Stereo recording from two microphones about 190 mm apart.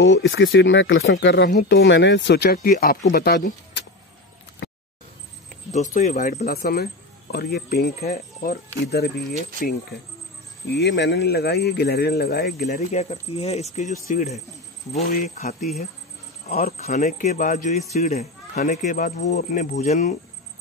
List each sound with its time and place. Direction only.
0.0 s speech: 90° left; by 3.8 s 60° left (ahead or behind)
5.7 s a man's voice: 35° left (ahead or behind); by 7.9 s 55° left (ahead or behind)
8.0 s speech: 35° left (ahead or behind)
8.8 s speech: 60° left (ahead or behind)
10.7 s speech: 65° left (ahead or behind)
12.6 s a man's voice: 40° left (ahead or behind)